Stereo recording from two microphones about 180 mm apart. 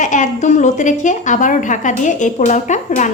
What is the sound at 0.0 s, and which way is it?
A woman's voice, 45° left (ahead or behind).